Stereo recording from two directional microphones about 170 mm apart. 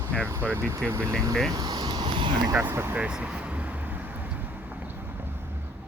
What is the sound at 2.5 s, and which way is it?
Vehicle, 15° right (ahead or behind).